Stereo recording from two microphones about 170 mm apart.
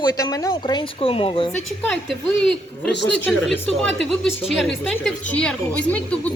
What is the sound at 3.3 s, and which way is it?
Speech, 5° left (ahead or behind).